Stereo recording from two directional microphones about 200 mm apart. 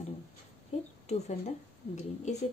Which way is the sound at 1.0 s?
35° left (ahead or behind).